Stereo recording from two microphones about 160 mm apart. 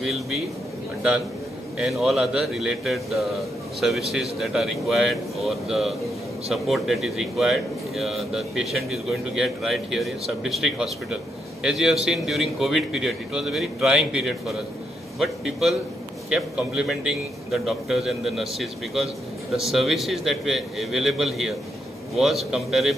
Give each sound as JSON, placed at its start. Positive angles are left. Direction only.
{"t": 0.0, "sound": "a man's voice", "side_deg": 0}
{"t": 1.8, "sound": "a man's voice", "side_deg": 0}